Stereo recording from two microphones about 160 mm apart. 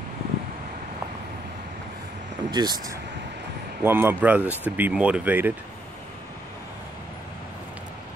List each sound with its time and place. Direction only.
2.5 s speech: 25° right (ahead or behind)
3.8 s speech: 15° right (ahead or behind)